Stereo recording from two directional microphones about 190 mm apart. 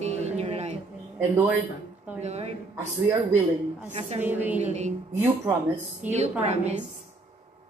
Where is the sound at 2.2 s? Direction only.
35° right (ahead or behind).